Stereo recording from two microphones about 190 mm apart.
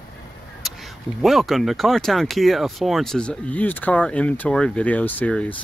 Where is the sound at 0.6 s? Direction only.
Centre (ahead or behind).